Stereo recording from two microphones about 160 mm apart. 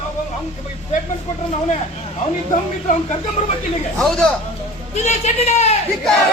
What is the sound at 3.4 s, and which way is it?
Speech, 45° left (ahead or behind).